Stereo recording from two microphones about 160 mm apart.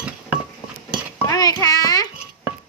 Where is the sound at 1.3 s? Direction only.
20° left (ahead or behind).